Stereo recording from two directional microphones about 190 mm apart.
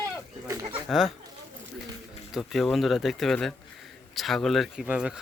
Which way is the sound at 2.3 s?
Centre (ahead or behind).